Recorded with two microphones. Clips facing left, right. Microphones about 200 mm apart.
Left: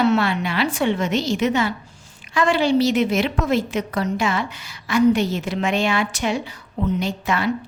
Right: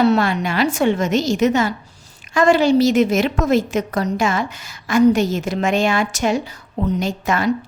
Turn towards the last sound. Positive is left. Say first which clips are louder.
# right 2 dB
turn(degrees=-45)  # may be behind; listen again after turning